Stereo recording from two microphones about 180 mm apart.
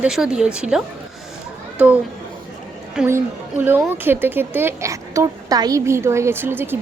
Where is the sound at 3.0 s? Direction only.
5° right (ahead or behind).